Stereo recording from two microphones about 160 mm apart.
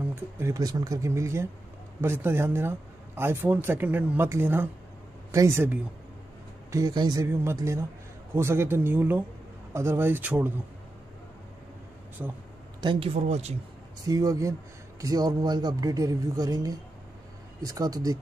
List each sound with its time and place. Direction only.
0.1 s a man's voice: 15° right (ahead or behind)
6.7 s a man's voice: 25° right (ahead or behind)
12.2 s speech: 10° right (ahead or behind)
12.8 s a man's voice: 35° right (ahead or behind)
14.0 s a man's voice: 25° right (ahead or behind)